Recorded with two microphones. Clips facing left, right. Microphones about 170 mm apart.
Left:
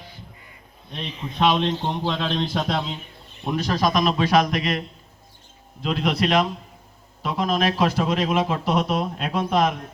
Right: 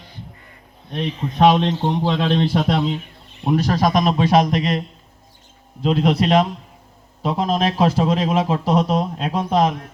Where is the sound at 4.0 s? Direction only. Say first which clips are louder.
Right 3 dB; 25° right (ahead or behind).